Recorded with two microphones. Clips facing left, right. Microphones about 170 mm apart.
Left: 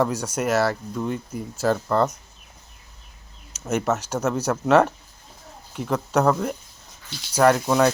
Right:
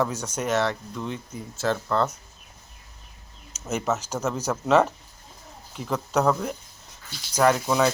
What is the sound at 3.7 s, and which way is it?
Speech, 5° right (ahead or behind).